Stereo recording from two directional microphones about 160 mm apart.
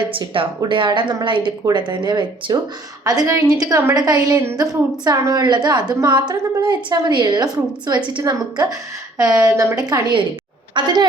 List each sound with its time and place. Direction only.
0.0 s a woman's voice: 30° right (ahead or behind)